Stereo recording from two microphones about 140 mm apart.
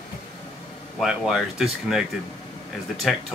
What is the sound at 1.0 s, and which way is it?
Speech, centre (ahead or behind).